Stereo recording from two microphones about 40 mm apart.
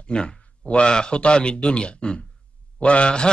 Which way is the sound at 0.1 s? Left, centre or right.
Left.